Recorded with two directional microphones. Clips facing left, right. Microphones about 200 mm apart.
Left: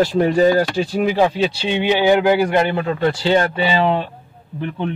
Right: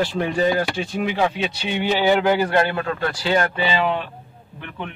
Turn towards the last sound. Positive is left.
turn(degrees=35)  # may be behind; listen again after turning